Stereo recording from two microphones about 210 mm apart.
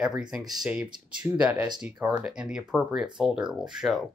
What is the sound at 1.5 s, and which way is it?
Speech, 20° right (ahead or behind).